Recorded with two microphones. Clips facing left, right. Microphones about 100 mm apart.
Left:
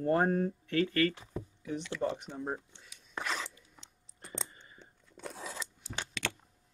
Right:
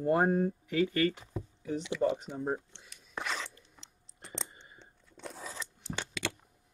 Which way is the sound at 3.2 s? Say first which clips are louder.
Even; centre (ahead or behind).